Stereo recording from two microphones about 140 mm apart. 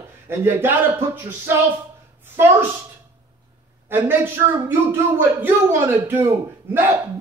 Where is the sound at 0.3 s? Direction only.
15° right (ahead or behind).